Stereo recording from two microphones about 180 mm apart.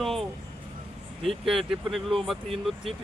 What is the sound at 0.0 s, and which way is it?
Vehicle, centre (ahead or behind).